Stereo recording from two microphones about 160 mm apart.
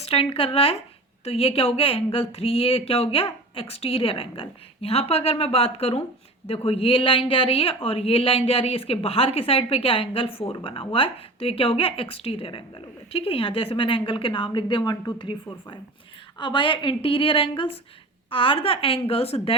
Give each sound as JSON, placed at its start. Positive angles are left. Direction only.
{"t": 0.0, "sound": "speech", "side_deg": 40}